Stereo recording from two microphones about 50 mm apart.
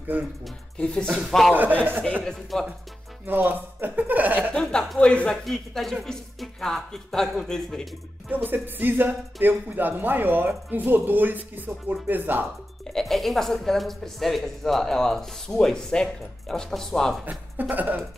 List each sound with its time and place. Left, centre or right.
0.7 s a woman's voice: centre
1.8 s speech: right
2.5 s speech: centre
3.3 s speech: right
4.5 s a woman's voice: centre
5.4 s a woman's voice: centre
8.3 s speech: right
12.9 s a woman's voice: centre
17.2 s speech: right